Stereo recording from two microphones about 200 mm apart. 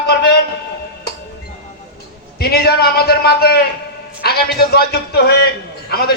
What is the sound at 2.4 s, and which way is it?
A man's voice, 50° left (ahead or behind).